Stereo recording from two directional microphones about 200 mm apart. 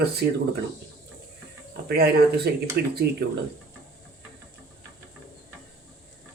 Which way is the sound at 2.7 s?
50° right (ahead or behind).